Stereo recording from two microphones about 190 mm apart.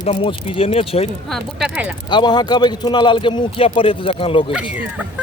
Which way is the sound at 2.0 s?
25° left (ahead or behind).